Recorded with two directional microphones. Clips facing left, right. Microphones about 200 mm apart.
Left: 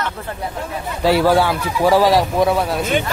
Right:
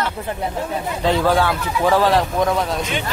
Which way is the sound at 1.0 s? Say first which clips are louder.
Left 3 dB; 10° left (ahead or behind).